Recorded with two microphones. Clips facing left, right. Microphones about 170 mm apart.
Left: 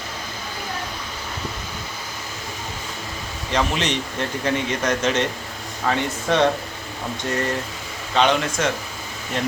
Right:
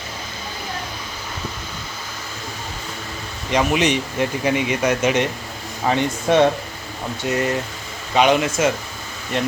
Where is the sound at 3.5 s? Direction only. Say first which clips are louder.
Right 4 dB; 10° right (ahead or behind).